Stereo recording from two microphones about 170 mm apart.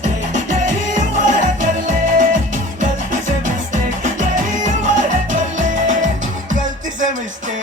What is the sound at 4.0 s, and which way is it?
Music, 50° right (ahead or behind).